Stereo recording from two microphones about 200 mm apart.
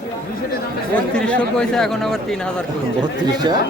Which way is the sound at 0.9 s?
5° left (ahead or behind).